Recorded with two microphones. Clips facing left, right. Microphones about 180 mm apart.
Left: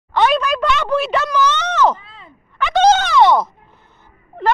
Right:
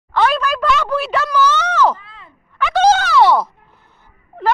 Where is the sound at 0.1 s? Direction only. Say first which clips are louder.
Left 1 dB; centre (ahead or behind).